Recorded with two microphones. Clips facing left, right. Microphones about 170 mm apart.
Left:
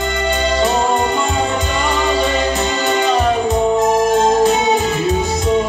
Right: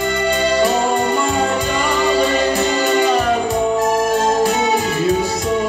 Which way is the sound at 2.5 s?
20° left (ahead or behind).